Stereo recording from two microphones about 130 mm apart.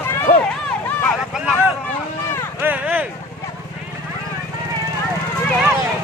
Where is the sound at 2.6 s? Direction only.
15° right (ahead or behind).